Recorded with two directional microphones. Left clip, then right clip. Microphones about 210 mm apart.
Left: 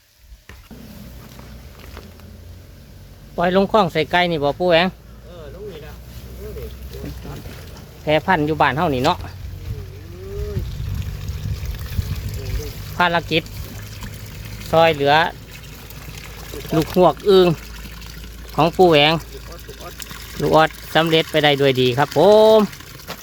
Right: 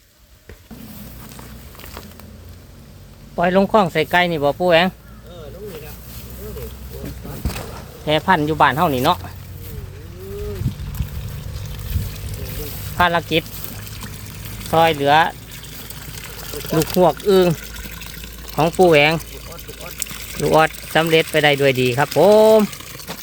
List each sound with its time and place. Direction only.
3.3 s speech: 10° left (ahead or behind)
8.0 s speech: centre (ahead or behind)
13.0 s speech: 10° left (ahead or behind)
14.7 s speech: 10° left (ahead or behind)
17.2 s speech: 15° left (ahead or behind)
17.7 s water: 25° right (ahead or behind)
18.5 s speech: 15° left (ahead or behind)
20.0 s pour: 25° right (ahead or behind)
20.4 s speech: 10° left (ahead or behind)
23.1 s a sound: 10° left (ahead or behind)